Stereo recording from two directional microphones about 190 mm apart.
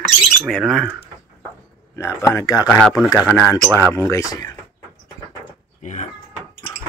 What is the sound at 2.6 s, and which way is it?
Speech, 5° left (ahead or behind).